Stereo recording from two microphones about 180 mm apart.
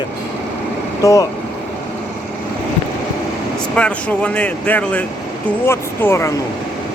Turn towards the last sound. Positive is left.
turn(degrees=15)  # may be behind; listen again after turning